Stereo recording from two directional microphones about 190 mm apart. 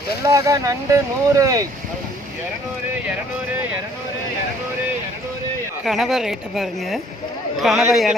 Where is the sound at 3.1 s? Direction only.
10° right (ahead or behind).